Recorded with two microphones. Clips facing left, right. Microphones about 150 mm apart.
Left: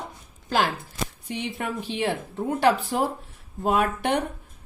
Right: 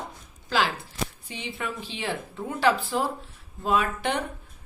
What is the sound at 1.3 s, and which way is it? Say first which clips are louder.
A woman's voice: left 4 dB; 60° left (ahead or behind).